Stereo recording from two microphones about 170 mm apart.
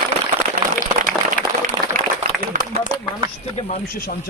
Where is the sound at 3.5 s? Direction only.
35° left (ahead or behind).